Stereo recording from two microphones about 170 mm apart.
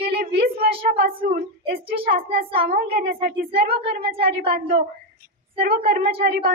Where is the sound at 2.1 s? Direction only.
60° right (ahead or behind).